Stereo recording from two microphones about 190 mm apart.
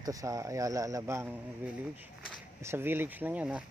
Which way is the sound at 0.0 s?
20° right (ahead or behind).